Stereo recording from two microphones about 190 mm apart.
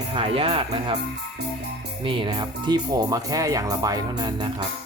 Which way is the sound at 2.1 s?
25° right (ahead or behind).